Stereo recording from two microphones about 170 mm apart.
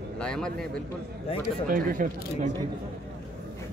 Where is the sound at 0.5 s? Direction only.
60° right (ahead or behind).